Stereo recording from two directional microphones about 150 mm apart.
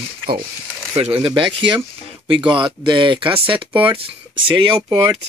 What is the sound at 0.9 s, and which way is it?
Speech, 40° right (ahead or behind).